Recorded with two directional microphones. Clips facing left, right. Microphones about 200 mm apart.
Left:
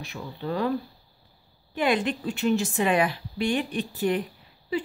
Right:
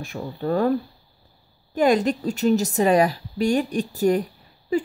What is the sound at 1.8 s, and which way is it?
A woman's voice, 40° right (ahead or behind).